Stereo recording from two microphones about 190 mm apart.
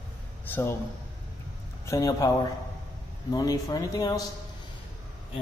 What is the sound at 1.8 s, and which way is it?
Speech, 20° left (ahead or behind).